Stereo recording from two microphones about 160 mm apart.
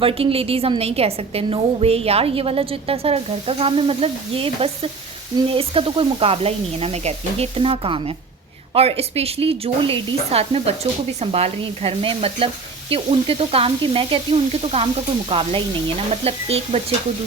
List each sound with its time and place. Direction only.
0.0 s a woman's voice: 35° right (ahead or behind)